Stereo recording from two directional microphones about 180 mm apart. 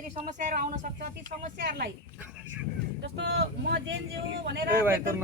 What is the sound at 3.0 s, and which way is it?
Speech, 70° right (ahead or behind).